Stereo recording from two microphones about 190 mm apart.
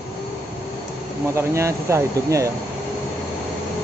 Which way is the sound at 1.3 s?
15° right (ahead or behind).